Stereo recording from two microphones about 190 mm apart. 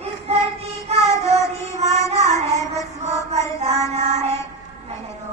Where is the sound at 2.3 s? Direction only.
20° left (ahead or behind).